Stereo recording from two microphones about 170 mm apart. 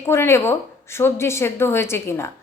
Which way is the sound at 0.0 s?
15° left (ahead or behind).